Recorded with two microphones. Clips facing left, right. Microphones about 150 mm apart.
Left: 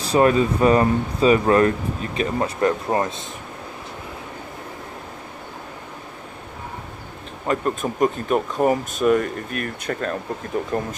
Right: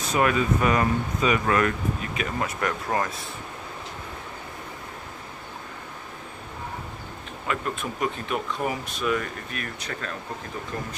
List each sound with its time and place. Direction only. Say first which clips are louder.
0.0 s speech: left 6 dB; 35° left (ahead or behind)
7.4 s speech: left 7 dB; 40° left (ahead or behind)